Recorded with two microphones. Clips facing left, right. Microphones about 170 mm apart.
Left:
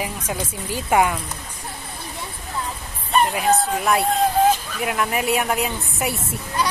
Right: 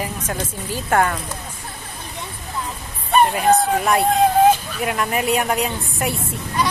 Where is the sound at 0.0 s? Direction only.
10° left (ahead or behind).